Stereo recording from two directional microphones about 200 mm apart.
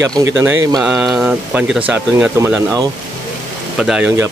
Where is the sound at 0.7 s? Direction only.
Centre (ahead or behind).